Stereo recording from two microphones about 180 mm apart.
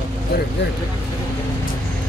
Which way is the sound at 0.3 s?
55° left (ahead or behind).